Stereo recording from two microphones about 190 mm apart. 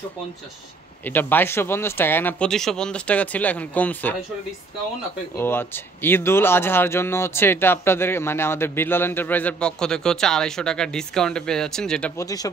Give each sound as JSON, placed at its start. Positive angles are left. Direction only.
{"t": 1.0, "sound": "speech", "side_deg": 10}
{"t": 5.4, "sound": "speech", "side_deg": 10}
{"t": 12.2, "sound": "speech", "side_deg": 20}